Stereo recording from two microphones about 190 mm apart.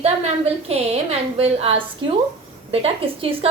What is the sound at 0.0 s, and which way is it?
A woman's voice, 30° right (ahead or behind).